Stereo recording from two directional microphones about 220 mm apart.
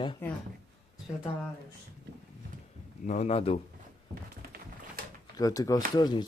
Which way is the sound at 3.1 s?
30° left (ahead or behind).